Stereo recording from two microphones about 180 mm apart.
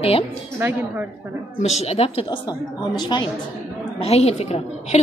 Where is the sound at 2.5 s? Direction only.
25° left (ahead or behind).